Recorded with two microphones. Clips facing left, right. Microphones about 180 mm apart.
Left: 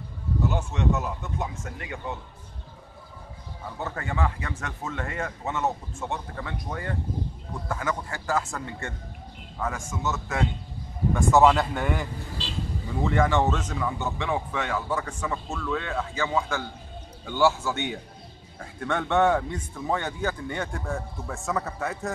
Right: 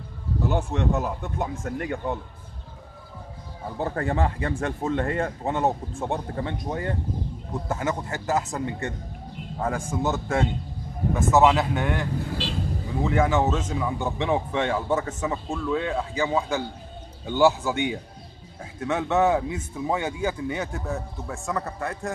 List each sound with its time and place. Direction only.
0.5 s speech: 55° right (ahead or behind)
3.8 s speech: 35° right (ahead or behind); by 8.9 s 20° right (ahead or behind)
9.6 s speech: 35° right (ahead or behind)
11.1 s a man's voice: 5° right (ahead or behind)
12.3 s vehicle: 60° right (ahead or behind)
13.0 s a man's voice: 5° right (ahead or behind)